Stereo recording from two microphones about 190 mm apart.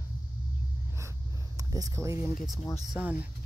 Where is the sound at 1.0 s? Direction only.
15° right (ahead or behind).